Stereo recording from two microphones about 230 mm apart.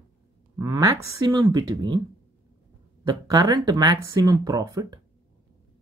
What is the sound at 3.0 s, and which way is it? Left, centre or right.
Speech, centre.